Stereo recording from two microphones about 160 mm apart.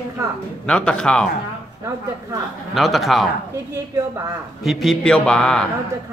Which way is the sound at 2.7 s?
Centre (ahead or behind).